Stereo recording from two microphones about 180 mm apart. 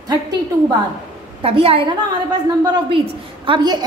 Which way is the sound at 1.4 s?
30° right (ahead or behind).